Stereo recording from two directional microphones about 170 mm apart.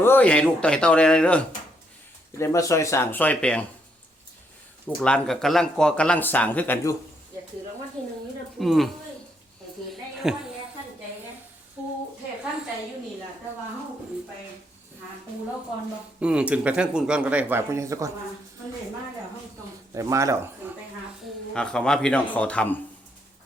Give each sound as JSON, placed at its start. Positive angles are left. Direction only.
{"t": 0.0, "sound": "speech", "side_deg": 10}
{"t": 2.4, "sound": "speech", "side_deg": 20}
{"t": 4.9, "sound": "speech", "side_deg": 5}
{"t": 8.5, "sound": "speech", "side_deg": 0}
{"t": 10.2, "sound": "speech", "side_deg": -5}
{"t": 11.8, "sound": "a sound", "side_deg": -5}
{"t": 16.2, "sound": "speech", "side_deg": -5}
{"t": 19.9, "sound": "speech", "side_deg": -20}
{"t": 21.5, "sound": "speech", "side_deg": 5}